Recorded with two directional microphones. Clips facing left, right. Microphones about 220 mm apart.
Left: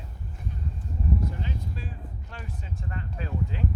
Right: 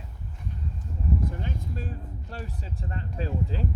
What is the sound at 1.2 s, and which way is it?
Speech, 50° right (ahead or behind).